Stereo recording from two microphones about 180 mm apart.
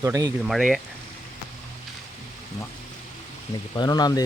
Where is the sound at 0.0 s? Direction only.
20° right (ahead or behind).